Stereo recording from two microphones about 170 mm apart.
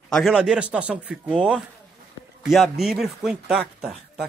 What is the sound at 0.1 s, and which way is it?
A man's voice, centre (ahead or behind).